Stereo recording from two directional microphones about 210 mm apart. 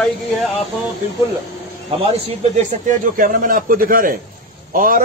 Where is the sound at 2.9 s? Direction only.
40° right (ahead or behind).